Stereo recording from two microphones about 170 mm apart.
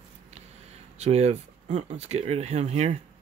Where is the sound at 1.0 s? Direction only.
40° right (ahead or behind).